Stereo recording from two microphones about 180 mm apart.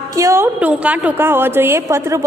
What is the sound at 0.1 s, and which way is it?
A woman's voice, 15° right (ahead or behind).